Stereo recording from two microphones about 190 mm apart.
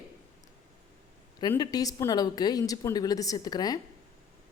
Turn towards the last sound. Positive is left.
turn(degrees=20)  # may be behind; listen again after turning